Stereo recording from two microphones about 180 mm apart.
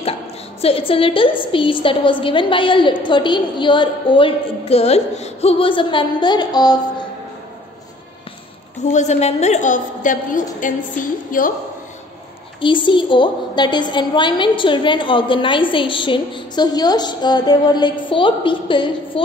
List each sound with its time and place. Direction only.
0.6 s a woman's voice: 35° left (ahead or behind)
8.9 s a woman's voice: 40° left (ahead or behind)
12.5 s a woman's voice: 25° left (ahead or behind)